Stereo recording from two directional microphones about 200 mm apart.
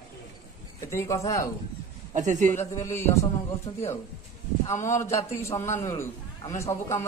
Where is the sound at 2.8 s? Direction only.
15° left (ahead or behind).